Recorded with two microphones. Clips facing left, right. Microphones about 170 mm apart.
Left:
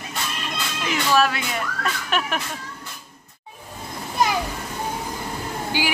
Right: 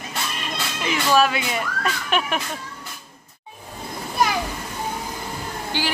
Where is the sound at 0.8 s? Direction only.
Centre (ahead or behind).